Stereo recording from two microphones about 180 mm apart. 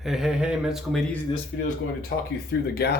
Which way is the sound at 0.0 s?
Centre (ahead or behind).